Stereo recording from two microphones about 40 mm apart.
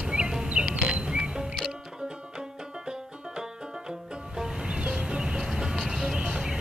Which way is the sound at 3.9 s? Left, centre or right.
Centre.